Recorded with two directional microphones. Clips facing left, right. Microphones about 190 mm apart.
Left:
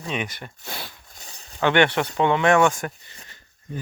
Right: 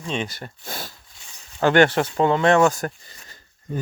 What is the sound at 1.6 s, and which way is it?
Speech, 40° right (ahead or behind).